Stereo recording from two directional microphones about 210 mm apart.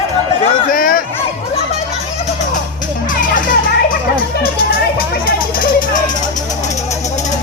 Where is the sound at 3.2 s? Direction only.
40° left (ahead or behind).